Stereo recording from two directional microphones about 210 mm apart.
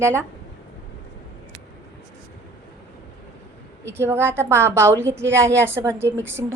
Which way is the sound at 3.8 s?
10° right (ahead or behind).